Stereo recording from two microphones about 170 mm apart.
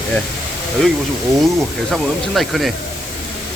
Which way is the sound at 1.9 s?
Centre (ahead or behind).